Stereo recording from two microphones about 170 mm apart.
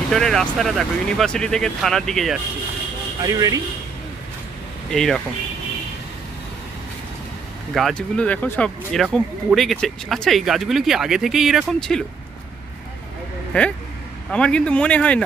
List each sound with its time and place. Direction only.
0.1 s speech: centre (ahead or behind)
3.2 s speech: 20° right (ahead or behind)
4.9 s speech: 5° left (ahead or behind)
7.7 s speech: centre (ahead or behind)
13.5 s speech: 5° left (ahead or behind)